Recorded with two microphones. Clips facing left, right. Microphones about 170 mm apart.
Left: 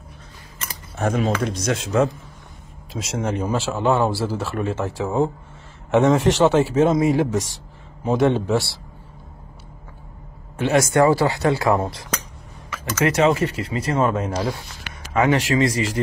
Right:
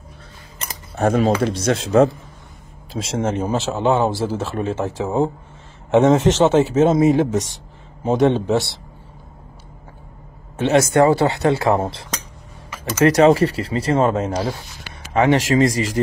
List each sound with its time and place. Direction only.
0.9 s a man's voice: 35° right (ahead or behind); by 8.7 s 20° right (ahead or behind)
10.6 s a man's voice: 25° right (ahead or behind)